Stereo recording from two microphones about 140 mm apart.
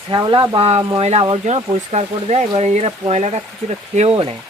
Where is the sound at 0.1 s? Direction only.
35° right (ahead or behind).